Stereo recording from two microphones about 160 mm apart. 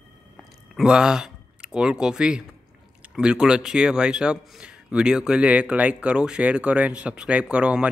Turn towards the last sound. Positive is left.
turn(degrees=-5)  # may be behind; listen again after turning